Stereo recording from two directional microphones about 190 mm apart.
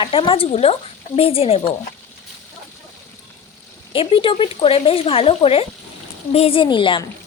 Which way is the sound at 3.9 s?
25° left (ahead or behind).